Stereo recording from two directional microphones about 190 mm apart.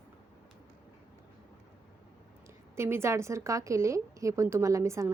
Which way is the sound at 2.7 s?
15° right (ahead or behind).